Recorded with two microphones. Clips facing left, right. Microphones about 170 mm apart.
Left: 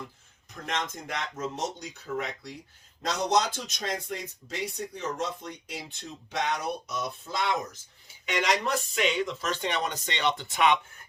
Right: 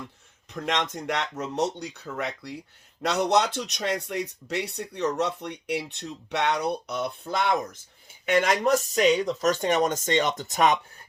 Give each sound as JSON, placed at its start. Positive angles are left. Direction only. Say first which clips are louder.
{"t": 0.6, "sound": "speech", "louder": "right 5 dB", "side_deg": -75}
{"t": 8.3, "sound": "speech", "louder": "right 6 dB", "side_deg": -50}